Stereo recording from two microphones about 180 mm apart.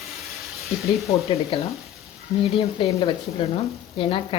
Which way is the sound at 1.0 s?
35° left (ahead or behind).